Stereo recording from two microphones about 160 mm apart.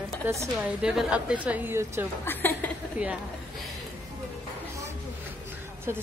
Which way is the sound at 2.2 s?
15° left (ahead or behind).